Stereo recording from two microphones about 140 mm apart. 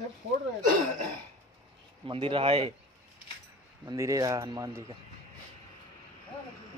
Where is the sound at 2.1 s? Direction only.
40° right (ahead or behind).